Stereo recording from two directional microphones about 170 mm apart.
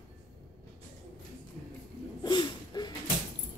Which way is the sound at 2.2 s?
25° left (ahead or behind).